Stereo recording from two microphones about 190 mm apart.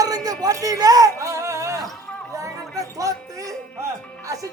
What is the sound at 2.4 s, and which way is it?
Chatter, 15° right (ahead or behind).